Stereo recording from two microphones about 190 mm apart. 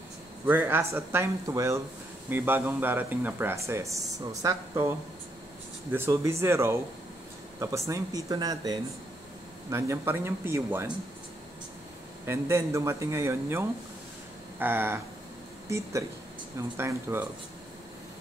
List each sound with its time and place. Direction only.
0.5 s speech: 10° right (ahead or behind)
5.9 s speech: 15° right (ahead or behind)
12.3 s speech: 15° right (ahead or behind)